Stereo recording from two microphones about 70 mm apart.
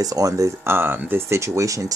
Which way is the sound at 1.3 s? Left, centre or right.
Right.